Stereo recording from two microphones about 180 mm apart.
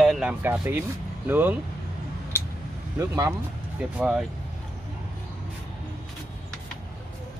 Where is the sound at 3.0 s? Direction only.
20° right (ahead or behind).